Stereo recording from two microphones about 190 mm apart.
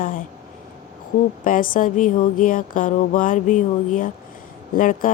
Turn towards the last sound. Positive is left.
turn(degrees=45)  # may be behind; listen again after turning